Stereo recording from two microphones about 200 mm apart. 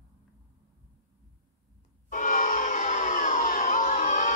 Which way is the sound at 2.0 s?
40° left (ahead or behind).